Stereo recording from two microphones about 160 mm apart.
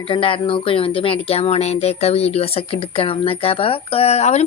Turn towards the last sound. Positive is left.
turn(degrees=40)  # may be behind; listen again after turning